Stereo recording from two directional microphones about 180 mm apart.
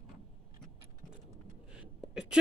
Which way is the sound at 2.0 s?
5° right (ahead or behind).